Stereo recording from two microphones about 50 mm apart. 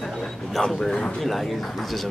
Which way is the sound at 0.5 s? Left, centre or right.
Centre.